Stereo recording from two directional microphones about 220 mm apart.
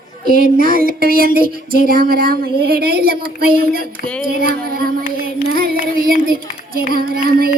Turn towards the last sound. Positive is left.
turn(degrees=-40)  # may be behind; listen again after turning